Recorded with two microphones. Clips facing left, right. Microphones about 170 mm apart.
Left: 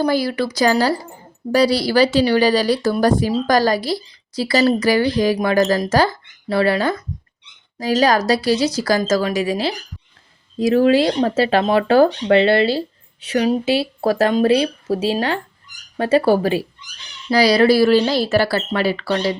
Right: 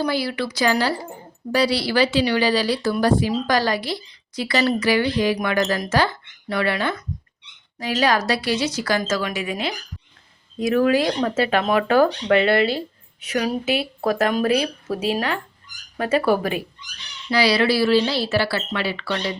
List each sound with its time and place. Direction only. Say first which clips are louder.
0.0 s a woman's voice: left 5 dB; 45° left (ahead or behind)
17.2 s a woman's voice: left 5 dB; 40° left (ahead or behind)